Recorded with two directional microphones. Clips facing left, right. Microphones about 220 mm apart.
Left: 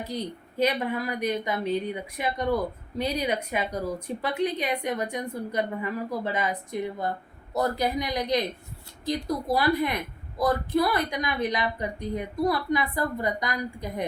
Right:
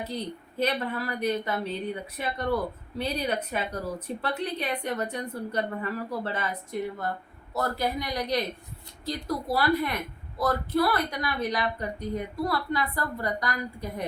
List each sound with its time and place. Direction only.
0.0 s a woman's voice: 10° left (ahead or behind)